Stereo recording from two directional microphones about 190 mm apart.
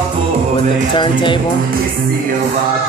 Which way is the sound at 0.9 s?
25° left (ahead or behind).